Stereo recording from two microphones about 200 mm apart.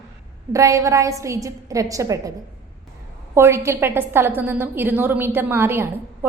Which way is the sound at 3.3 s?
15° right (ahead or behind).